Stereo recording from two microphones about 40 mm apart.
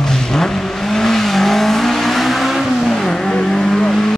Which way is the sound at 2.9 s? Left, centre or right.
Centre.